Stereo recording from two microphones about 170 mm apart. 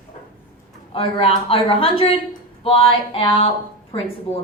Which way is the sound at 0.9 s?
35° left (ahead or behind).